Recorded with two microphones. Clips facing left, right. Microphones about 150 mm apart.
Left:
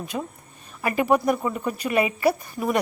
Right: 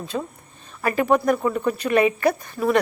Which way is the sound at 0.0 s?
15° left (ahead or behind).